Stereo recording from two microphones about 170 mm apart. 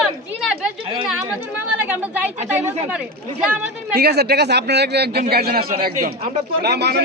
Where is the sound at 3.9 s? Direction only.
70° right (ahead or behind).